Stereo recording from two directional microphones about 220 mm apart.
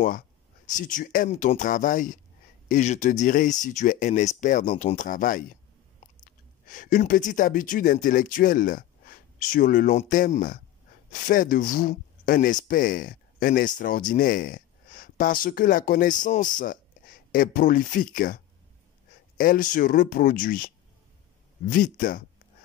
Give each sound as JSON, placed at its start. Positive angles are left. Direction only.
{"t": 0.7, "sound": "speech", "side_deg": 35}
{"t": 6.7, "sound": "speech", "side_deg": 35}